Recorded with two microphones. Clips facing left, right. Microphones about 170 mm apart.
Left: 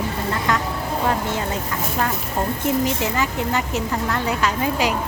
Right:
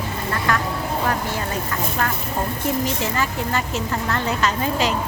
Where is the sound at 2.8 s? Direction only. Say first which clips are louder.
Left 1 dB; 15° left (ahead or behind).